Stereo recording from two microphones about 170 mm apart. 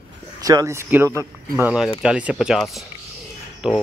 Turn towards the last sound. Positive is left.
turn(degrees=-5)  # may be behind; listen again after turning